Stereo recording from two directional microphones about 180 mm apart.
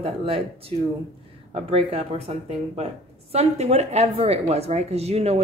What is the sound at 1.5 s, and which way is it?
Speech, 35° right (ahead or behind).